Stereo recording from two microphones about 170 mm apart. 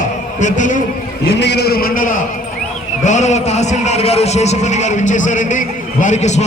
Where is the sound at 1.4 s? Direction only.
80° left; by 2.1 s 55° left (ahead or behind).